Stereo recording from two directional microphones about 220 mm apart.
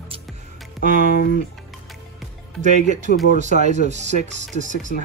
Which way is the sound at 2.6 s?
35° right (ahead or behind).